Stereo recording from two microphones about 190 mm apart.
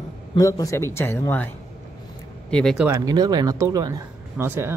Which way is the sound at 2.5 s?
Centre (ahead or behind).